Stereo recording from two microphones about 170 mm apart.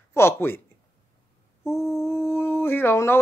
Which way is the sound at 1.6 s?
15° left (ahead or behind).